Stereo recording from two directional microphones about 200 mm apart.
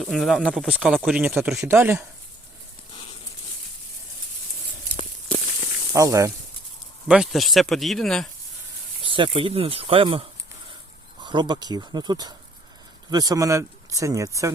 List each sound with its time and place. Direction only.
0.0 s speech: centre (ahead or behind)
2.9 s a sound: 25° left (ahead or behind)
5.9 s speech: 15° right (ahead or behind)
7.1 s speech: centre (ahead or behind)
9.0 s speech: 25° right (ahead or behind)